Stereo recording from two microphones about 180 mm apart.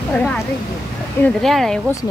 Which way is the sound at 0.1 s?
5° left (ahead or behind).